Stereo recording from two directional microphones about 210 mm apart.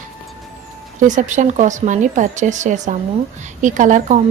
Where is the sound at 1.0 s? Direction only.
35° right (ahead or behind).